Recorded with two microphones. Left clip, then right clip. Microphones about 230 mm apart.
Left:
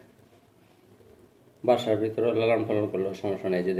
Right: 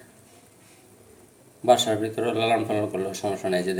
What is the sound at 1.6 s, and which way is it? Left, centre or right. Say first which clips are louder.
Speech: right 3 dB; centre.